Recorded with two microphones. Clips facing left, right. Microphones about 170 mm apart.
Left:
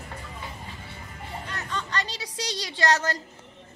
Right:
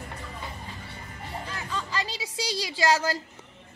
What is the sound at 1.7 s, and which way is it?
A woman's voice, 5° right (ahead or behind).